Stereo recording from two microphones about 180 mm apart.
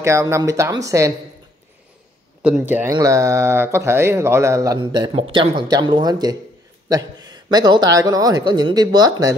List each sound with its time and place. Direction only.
0.0 s speech: 15° right (ahead or behind)
2.4 s a man's voice: 10° right (ahead or behind)